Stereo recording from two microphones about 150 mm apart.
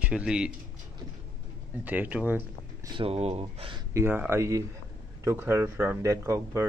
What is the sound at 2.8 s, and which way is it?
Speech, 35° right (ahead or behind).